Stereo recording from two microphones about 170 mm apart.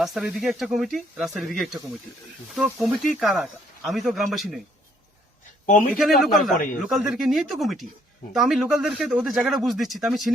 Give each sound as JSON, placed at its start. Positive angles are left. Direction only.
{"t": 0.0, "sound": "speech", "side_deg": 0}
{"t": 5.6, "sound": "speech", "side_deg": 50}
{"t": 5.9, "sound": "speech", "side_deg": 0}